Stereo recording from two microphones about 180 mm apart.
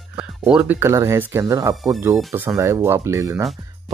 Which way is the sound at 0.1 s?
5° right (ahead or behind).